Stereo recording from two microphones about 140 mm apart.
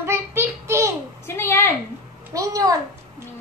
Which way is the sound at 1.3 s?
15° left (ahead or behind).